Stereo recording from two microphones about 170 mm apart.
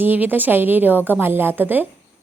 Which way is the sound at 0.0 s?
10° right (ahead or behind).